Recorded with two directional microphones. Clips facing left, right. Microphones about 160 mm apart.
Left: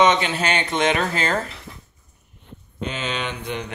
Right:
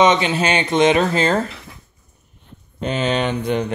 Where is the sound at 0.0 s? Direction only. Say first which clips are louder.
Right 3 dB; 20° right (ahead or behind).